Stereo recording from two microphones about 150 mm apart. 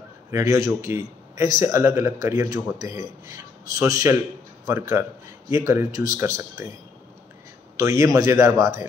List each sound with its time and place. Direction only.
0.3 s a man's voice: 20° right (ahead or behind)
7.7 s speech: 20° right (ahead or behind)